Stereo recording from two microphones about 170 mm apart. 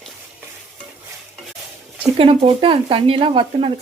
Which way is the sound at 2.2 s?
30° right (ahead or behind).